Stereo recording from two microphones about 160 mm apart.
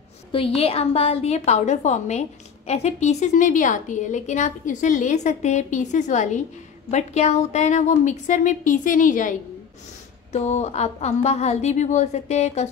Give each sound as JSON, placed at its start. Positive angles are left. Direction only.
{"t": 0.3, "sound": "a woman's voice", "side_deg": 35}
{"t": 10.3, "sound": "a woman's voice", "side_deg": 45}